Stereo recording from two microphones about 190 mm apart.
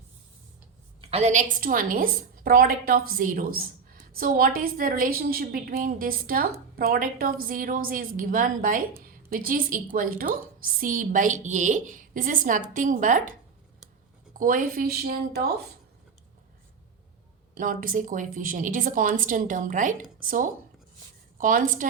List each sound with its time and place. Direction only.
1.1 s a woman's voice: 40° right (ahead or behind)
14.3 s speech: 45° right (ahead or behind)
17.5 s a woman's voice: 45° right (ahead or behind)